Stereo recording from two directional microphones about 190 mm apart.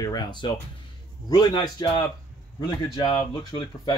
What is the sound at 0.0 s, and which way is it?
Speech, 20° left (ahead or behind).